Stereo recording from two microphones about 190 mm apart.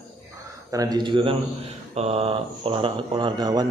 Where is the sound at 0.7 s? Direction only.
20° right (ahead or behind).